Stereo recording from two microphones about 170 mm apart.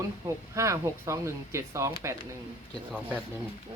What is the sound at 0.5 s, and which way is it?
Speech, 15° right (ahead or behind).